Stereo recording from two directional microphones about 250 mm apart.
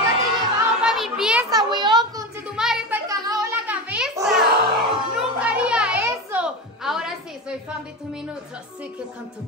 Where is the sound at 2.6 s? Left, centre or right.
Centre.